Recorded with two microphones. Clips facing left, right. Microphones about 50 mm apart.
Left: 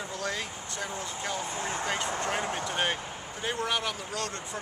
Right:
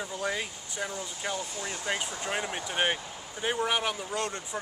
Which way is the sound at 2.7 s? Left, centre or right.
Centre.